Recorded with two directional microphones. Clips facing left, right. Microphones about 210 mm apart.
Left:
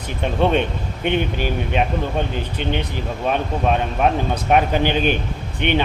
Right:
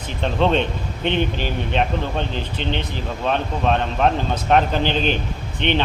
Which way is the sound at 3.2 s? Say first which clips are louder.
Left 1 dB; 10° left (ahead or behind).